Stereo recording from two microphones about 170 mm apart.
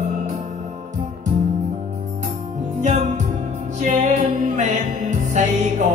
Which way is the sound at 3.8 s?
45° right (ahead or behind).